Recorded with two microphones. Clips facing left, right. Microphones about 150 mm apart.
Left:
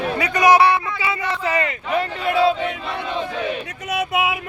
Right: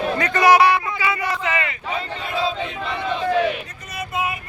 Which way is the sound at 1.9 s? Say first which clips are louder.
Left 7 dB; 70° left (ahead or behind).